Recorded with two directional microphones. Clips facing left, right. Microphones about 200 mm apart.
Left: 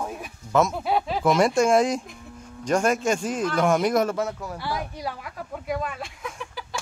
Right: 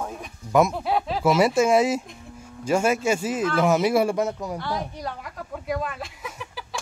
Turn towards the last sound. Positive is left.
turn(degrees=-5)  # may be behind; listen again after turning